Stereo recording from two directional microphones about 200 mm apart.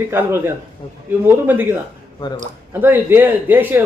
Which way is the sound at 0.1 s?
10° right (ahead or behind).